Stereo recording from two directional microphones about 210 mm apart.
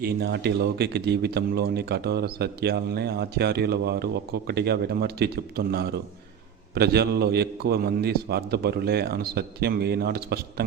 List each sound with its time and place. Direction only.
0.0 s a man's voice: 50° right (ahead or behind)